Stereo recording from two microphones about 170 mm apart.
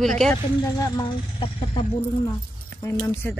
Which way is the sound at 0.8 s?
20° left (ahead or behind).